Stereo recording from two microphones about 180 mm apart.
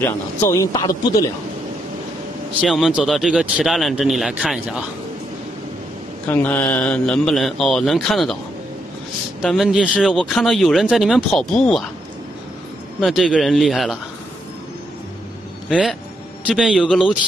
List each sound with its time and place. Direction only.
0.0 s a man's voice: 15° left (ahead or behind)
2.6 s speech: centre (ahead or behind)
6.2 s speech: 10° left (ahead or behind)
9.4 s speech: centre (ahead or behind)
13.0 s speech: centre (ahead or behind)
15.7 s speech: centre (ahead or behind)